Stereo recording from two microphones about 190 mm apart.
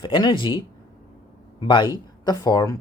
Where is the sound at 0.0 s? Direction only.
25° left (ahead or behind).